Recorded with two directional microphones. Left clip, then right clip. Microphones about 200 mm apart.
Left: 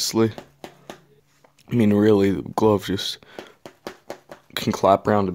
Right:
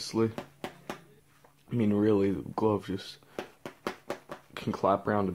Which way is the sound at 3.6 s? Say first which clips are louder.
Even; 5° right (ahead or behind).